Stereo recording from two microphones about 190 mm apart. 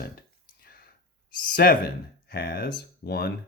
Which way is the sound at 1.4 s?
50° left (ahead or behind).